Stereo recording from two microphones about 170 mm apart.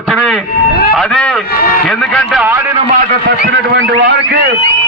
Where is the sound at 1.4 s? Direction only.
65° left (ahead or behind).